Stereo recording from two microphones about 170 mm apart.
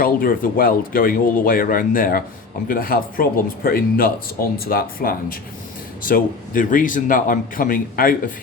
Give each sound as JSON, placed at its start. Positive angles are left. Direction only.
{"t": 0.0, "sound": "speech", "side_deg": 60}